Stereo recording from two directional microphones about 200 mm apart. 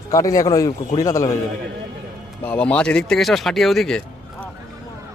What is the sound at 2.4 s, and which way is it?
A man's voice, 5° left (ahead or behind).